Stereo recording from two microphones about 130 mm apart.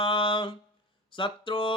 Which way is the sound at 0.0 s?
40° left (ahead or behind).